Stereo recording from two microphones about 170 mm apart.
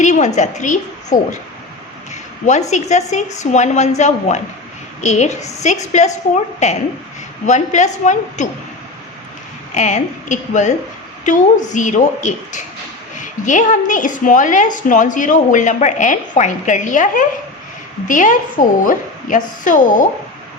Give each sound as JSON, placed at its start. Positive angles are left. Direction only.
{"t": 0.0, "sound": "a woman's voice", "side_deg": 45}
{"t": 2.5, "sound": "a woman's voice", "side_deg": 45}
{"t": 9.7, "sound": "a woman's voice", "side_deg": 45}